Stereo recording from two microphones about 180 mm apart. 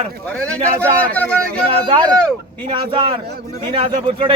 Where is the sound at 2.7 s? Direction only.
30° right (ahead or behind).